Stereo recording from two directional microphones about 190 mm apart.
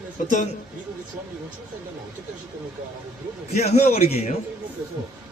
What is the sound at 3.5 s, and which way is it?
Speech, 35° left (ahead or behind).